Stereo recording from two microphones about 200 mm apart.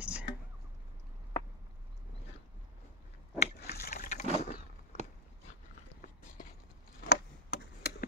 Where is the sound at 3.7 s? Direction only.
45° left (ahead or behind).